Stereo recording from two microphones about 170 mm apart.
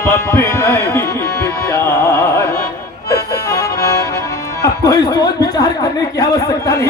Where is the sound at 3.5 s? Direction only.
20° left (ahead or behind).